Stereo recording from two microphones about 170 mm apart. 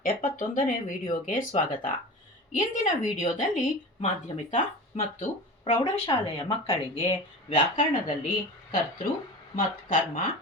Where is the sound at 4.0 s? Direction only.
30° left (ahead or behind).